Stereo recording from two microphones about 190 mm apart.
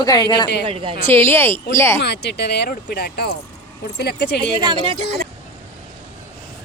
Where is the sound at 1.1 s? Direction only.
10° left (ahead or behind).